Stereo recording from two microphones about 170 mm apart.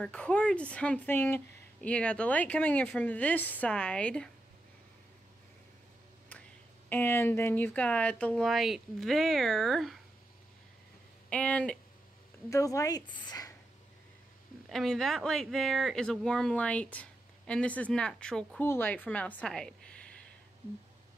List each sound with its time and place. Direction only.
0.0 s speech: 5° left (ahead or behind)
6.9 s speech: 10° left (ahead or behind)
11.2 s speech: 5° left (ahead or behind)
12.4 s a woman's voice: 20° left (ahead or behind)
14.7 s a woman's voice: centre (ahead or behind)